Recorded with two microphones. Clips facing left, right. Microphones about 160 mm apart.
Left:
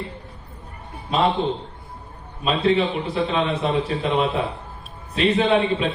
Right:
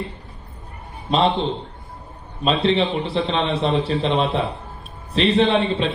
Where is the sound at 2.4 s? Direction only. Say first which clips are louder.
Right 1 dB; 25° right (ahead or behind).